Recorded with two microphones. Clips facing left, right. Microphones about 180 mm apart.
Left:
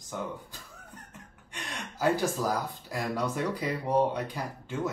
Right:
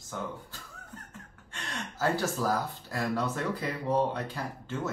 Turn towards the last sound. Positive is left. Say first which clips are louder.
# left 2 dB
turn(degrees=15)  # may be behind; listen again after turning